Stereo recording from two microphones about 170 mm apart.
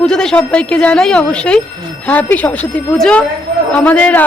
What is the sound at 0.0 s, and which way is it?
A woman's voice, 5° left (ahead or behind).